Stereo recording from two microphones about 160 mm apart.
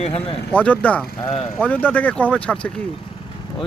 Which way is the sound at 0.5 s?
10° left (ahead or behind).